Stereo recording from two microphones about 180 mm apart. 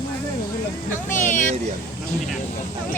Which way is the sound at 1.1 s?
45° left (ahead or behind).